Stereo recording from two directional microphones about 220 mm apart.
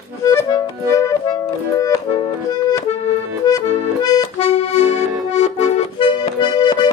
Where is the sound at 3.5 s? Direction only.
15° left (ahead or behind).